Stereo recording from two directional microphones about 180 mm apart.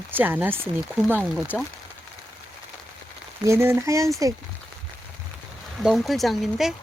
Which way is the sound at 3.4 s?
15° right (ahead or behind).